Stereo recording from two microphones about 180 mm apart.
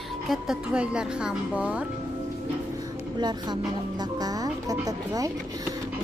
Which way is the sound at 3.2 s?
25° right (ahead or behind).